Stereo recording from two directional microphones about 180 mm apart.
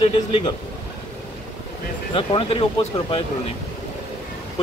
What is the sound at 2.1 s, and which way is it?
Speech, 30° left (ahead or behind).